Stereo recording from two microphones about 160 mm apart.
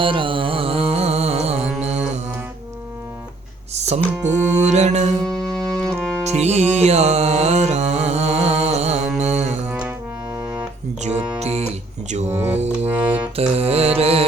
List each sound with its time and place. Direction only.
0.0 s music: 30° right (ahead or behind)
3.8 s music: 45° right (ahead or behind)
5.2 s music: 5° left (ahead or behind)
6.2 s music: 45° right (ahead or behind)
9.6 s music: 5° right (ahead or behind)
11.3 s music: 40° right (ahead or behind)
12.3 s music: 10° right (ahead or behind)
13.5 s music: 40° right (ahead or behind)